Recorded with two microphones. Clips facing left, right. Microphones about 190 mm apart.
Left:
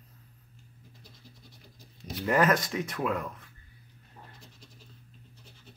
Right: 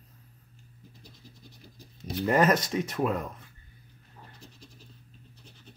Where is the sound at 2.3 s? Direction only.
20° right (ahead or behind).